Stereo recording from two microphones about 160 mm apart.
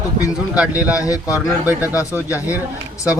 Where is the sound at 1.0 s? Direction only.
20° left (ahead or behind).